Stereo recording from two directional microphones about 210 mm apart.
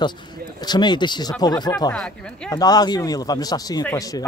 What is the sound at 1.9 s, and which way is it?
Speech, 5° left (ahead or behind).